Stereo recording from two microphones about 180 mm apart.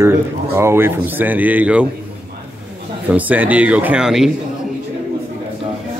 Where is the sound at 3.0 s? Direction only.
10° right (ahead or behind).